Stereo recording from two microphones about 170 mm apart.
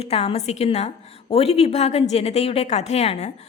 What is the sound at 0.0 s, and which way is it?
A woman's voice, 35° left (ahead or behind).